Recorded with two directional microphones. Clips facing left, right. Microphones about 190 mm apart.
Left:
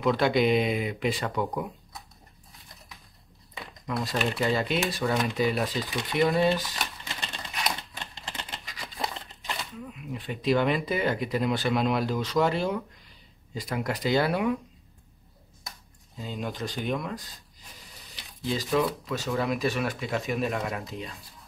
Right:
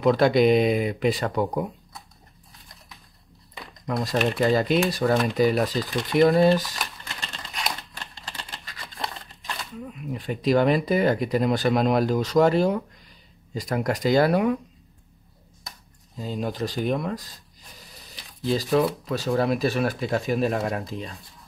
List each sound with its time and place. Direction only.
0.0 s speech: 40° right (ahead or behind)
3.8 s speech: 40° right (ahead or behind)
7.9 s typewriter: 20° left (ahead or behind)
10.1 s speech: 40° right (ahead or behind)
16.2 s speech: 40° right (ahead or behind)
18.5 s speech: 35° right (ahead or behind)